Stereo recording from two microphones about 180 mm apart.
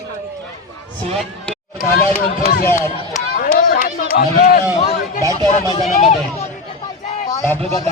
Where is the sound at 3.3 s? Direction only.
50° left (ahead or behind).